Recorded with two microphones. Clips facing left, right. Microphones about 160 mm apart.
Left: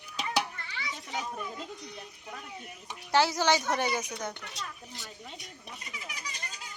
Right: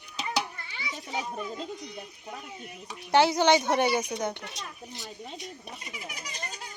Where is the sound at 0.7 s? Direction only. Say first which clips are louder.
Right 3 dB; 20° right (ahead or behind).